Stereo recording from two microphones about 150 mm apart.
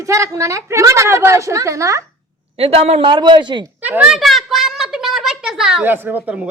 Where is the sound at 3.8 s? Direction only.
10° right (ahead or behind).